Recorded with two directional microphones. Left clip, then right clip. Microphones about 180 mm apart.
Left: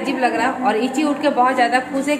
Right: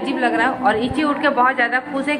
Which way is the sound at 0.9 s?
25° left (ahead or behind).